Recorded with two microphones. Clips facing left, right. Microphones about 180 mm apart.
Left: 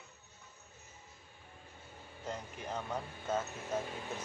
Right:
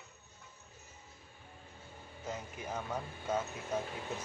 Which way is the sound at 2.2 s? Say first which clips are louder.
Even; 5° right (ahead or behind).